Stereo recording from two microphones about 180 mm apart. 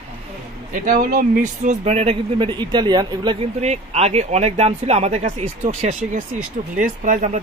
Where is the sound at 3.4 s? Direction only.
35° right (ahead or behind).